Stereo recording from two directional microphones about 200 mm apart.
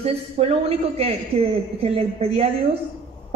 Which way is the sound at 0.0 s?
30° right (ahead or behind).